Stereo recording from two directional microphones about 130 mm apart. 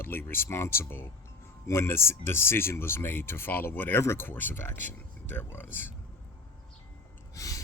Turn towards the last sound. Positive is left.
turn(degrees=25)  # may be behind; listen again after turning